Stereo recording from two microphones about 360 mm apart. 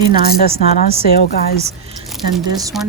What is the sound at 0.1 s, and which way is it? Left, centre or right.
A woman's voice, left.